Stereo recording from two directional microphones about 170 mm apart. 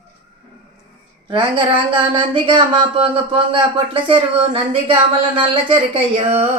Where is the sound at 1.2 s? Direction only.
30° right (ahead or behind).